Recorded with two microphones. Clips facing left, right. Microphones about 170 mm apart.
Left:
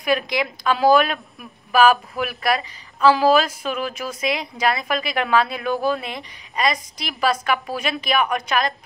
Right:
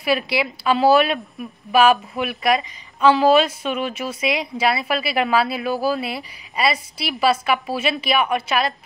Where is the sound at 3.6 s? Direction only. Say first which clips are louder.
Right 2 dB; centre (ahead or behind).